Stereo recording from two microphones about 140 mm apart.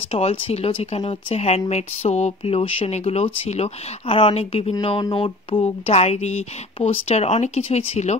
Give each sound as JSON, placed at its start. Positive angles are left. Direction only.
{"t": 0.1, "sound": "speech", "side_deg": 45}
{"t": 5.1, "sound": "a sound", "side_deg": 40}
{"t": 5.9, "sound": "speech", "side_deg": 50}